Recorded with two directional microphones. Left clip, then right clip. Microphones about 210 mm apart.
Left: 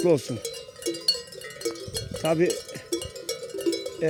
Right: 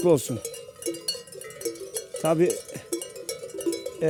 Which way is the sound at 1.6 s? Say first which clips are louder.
Left 1 dB; centre (ahead or behind).